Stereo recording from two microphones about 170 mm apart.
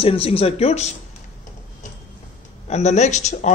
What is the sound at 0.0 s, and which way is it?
Speech, 35° left (ahead or behind).